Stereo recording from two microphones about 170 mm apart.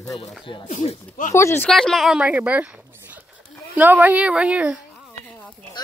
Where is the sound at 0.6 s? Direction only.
50° left (ahead or behind).